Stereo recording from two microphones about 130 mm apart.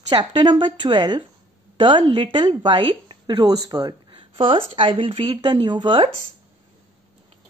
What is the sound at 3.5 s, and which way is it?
Speech, 30° right (ahead or behind).